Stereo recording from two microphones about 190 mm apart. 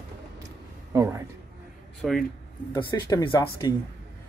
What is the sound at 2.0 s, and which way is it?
Speech, centre (ahead or behind).